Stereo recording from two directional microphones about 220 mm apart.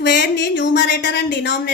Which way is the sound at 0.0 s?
50° left (ahead or behind).